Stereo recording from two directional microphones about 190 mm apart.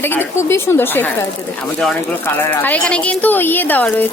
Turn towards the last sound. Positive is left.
turn(degrees=10)  # may be behind; listen again after turning